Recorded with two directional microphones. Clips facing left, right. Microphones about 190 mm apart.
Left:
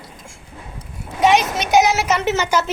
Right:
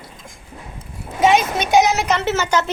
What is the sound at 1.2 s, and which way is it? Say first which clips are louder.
Speech: even; centre (ahead or behind).